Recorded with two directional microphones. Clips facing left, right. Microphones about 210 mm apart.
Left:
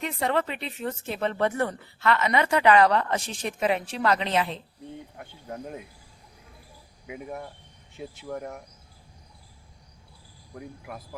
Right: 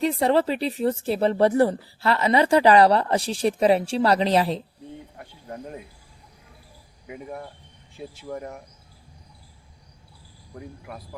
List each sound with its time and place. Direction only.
0.0 s speech: 35° right (ahead or behind)
5.1 s speech: centre (ahead or behind)
7.1 s speech: 5° left (ahead or behind)
10.5 s speech: centre (ahead or behind)